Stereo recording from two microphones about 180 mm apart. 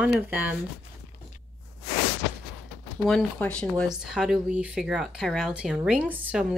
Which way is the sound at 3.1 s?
5° left (ahead or behind).